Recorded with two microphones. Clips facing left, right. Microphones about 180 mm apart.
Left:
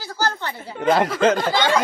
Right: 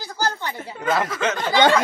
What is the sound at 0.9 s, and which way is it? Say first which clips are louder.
Speech: left 5 dB; 30° left (ahead or behind).